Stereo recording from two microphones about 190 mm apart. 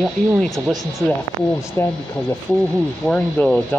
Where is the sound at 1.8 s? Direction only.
15° left (ahead or behind).